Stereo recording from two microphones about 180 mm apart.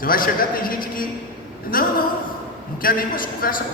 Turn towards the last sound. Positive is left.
turn(degrees=50)  # may be behind; listen again after turning